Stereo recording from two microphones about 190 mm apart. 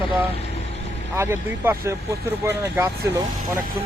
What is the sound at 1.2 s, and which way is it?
Speech, 15° right (ahead or behind).